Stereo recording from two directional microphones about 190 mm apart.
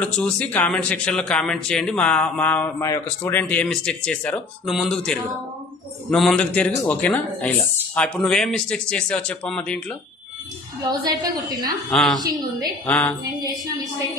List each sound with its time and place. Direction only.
0.0 s speech: 5° left (ahead or behind)
11.9 s speech: centre (ahead or behind)
12.2 s a woman's voice: 20° right (ahead or behind)
12.8 s a sound: 5° left (ahead or behind)
13.4 s a woman's voice: 20° right (ahead or behind)